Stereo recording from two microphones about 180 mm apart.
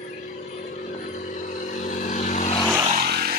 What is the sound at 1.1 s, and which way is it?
Vehicle, 45° left (ahead or behind).